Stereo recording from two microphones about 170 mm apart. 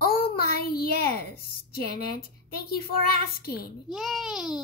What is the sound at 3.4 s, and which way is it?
Speech, 65° left (ahead or behind).